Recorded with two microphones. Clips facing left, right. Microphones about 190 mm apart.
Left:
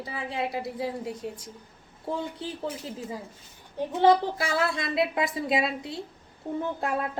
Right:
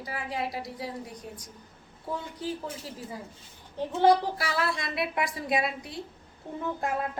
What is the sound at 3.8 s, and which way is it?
A woman's voice, 20° left (ahead or behind).